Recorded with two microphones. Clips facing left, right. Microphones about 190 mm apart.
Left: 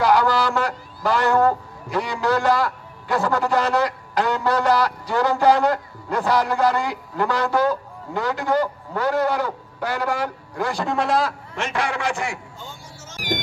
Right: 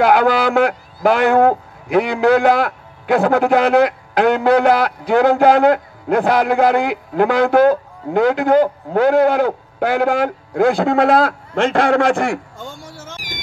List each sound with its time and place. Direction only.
0.0 s a man's voice: 55° right (ahead or behind)